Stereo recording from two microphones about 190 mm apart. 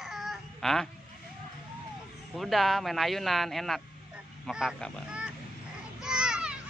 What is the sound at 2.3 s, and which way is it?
Speech, centre (ahead or behind).